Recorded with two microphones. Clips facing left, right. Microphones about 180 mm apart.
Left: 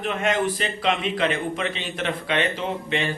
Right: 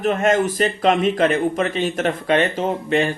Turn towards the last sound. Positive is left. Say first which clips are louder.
# right 6 dB
turn(degrees=-45)  # may be behind; listen again after turning